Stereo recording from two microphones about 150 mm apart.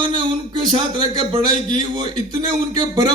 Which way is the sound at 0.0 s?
30° right (ahead or behind).